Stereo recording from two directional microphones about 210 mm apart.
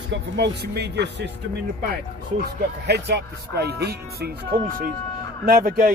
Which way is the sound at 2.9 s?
50° right (ahead or behind).